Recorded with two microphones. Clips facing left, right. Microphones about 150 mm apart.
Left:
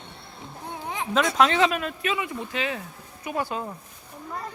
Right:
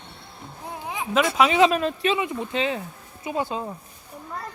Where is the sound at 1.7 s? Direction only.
30° right (ahead or behind).